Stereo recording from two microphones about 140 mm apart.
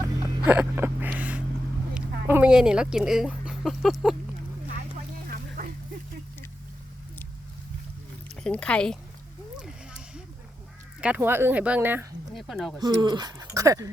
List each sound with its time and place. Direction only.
0.2 s a sound: 15° right (ahead or behind)
2.0 s speech: 10° right (ahead or behind)
5.3 s a sound: 90° right
8.4 s speech: 5° left (ahead or behind)
11.0 s speech: 15° right (ahead or behind)
12.3 s speech: centre (ahead or behind)
12.8 s speech: 30° right (ahead or behind)